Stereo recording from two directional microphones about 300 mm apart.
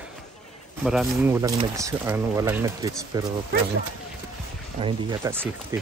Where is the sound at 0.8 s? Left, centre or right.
Centre.